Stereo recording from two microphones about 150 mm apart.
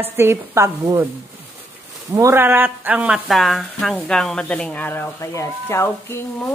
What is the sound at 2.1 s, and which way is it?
Speech, 15° right (ahead or behind).